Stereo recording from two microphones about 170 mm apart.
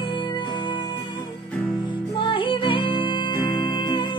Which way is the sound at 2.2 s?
30° left (ahead or behind).